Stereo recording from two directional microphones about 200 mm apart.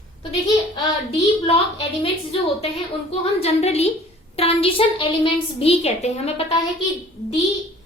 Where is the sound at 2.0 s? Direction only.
30° left (ahead or behind).